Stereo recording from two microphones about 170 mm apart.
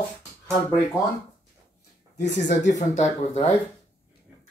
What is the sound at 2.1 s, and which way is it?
Speech, 90° left.